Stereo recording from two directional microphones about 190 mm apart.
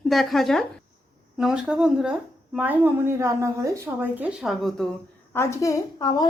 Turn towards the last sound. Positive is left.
turn(degrees=20)  # may be behind; listen again after turning